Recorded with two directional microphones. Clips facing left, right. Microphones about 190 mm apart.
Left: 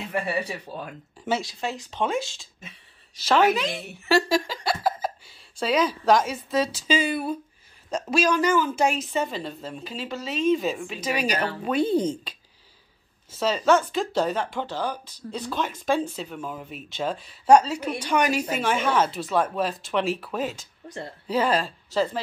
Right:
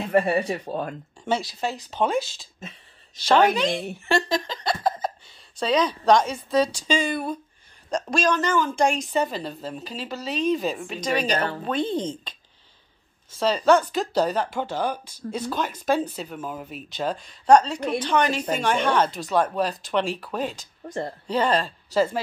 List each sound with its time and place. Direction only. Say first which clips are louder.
0.1 s speech: right 7 dB; 55° right (ahead or behind)
1.4 s speech: right 2 dB; 35° right (ahead or behind)
3.2 s speech: right 2 dB; 5° left (ahead or behind)
14.1 s speech: right 3 dB; 40° right (ahead or behind)
14.7 s speech: right 3 dB; 50° right (ahead or behind)
15.3 s speech: right 1 dB; centre (ahead or behind)
15.7 s speech: right 1 dB; 40° right (ahead or behind)
16.3 s speech: right 1 dB; centre (ahead or behind)